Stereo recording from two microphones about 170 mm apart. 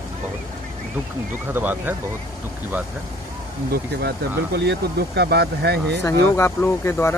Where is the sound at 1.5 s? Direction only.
10° right (ahead or behind).